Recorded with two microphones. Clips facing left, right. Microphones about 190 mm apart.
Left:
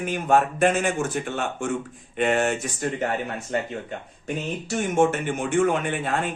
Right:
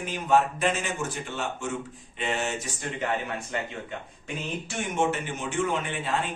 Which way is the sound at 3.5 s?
40° left (ahead or behind).